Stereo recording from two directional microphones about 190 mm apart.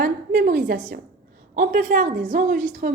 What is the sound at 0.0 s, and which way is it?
A woman's voice, 50° right (ahead or behind).